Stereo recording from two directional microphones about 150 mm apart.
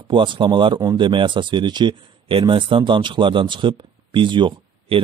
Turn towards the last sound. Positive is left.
turn(degrees=-30)  # may be behind; listen again after turning